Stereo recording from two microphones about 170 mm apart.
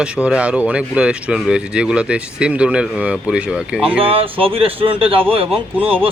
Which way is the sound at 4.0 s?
35° right (ahead or behind).